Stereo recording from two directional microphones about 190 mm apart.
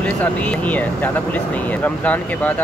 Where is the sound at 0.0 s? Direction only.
5° left (ahead or behind).